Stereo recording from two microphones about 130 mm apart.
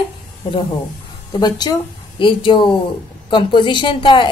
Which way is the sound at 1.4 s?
35° left (ahead or behind).